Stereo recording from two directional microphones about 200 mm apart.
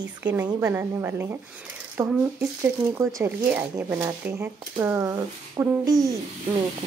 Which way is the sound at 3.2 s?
15° right (ahead or behind).